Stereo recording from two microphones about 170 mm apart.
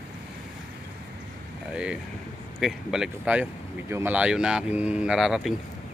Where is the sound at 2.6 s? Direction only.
5° right (ahead or behind).